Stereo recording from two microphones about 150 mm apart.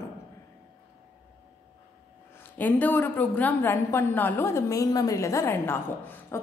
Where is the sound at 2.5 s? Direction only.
10° left (ahead or behind).